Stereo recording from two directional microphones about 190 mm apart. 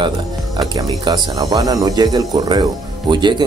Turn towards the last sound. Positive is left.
turn(degrees=-25)  # may be behind; listen again after turning